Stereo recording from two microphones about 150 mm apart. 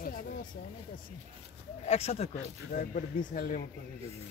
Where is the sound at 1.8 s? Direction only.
45° left (ahead or behind).